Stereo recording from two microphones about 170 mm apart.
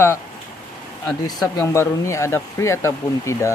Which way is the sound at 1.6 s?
15° left (ahead or behind).